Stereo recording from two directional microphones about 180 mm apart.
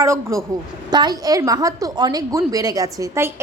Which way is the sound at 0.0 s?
15° right (ahead or behind).